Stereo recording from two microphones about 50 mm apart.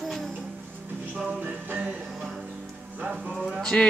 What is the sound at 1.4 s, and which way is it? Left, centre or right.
Music, right.